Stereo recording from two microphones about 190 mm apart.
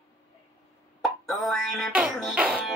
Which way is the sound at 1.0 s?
Centre (ahead or behind).